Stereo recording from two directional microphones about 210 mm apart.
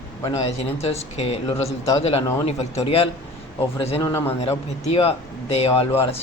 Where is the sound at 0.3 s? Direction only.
30° left (ahead or behind).